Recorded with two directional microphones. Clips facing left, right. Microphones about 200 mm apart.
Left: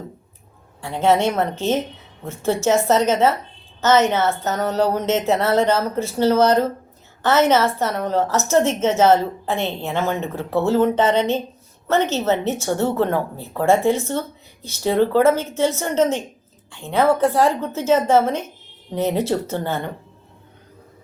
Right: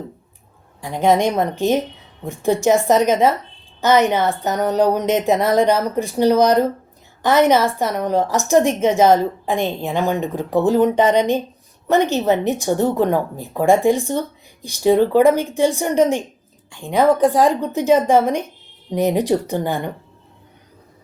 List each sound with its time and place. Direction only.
0.8 s a woman's voice: 15° right (ahead or behind)